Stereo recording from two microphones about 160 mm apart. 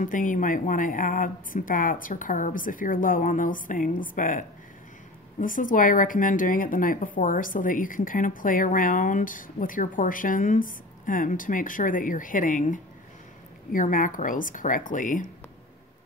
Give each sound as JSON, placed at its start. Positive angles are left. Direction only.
{"t": 0.0, "sound": "a woman's voice", "side_deg": 55}